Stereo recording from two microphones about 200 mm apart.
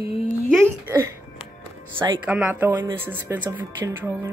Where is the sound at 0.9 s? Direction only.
15° right (ahead or behind).